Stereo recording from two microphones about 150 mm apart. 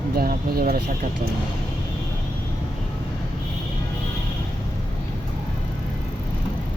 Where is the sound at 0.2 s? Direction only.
85° right.